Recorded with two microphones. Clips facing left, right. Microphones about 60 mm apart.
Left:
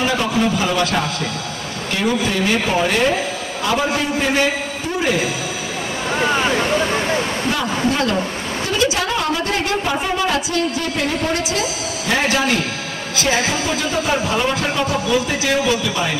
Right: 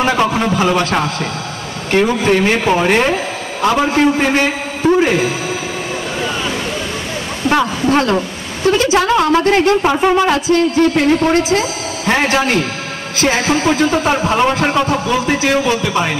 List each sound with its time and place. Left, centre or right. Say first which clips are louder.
0.0 s a woman's voice: right 4 dB; right
6.2 s a sound: left 4 dB; left
7.4 s a woman's voice: right 10 dB; right